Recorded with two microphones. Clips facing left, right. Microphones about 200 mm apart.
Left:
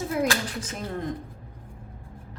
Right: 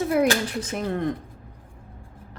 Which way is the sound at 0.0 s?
65° right (ahead or behind).